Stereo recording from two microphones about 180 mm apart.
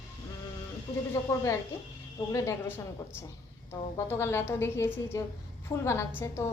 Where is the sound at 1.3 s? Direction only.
15° left (ahead or behind).